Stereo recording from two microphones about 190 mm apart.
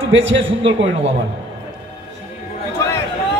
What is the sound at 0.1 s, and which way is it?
A man's voice, 70° right (ahead or behind).